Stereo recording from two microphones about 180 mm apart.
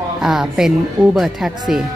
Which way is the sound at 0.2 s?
5° right (ahead or behind).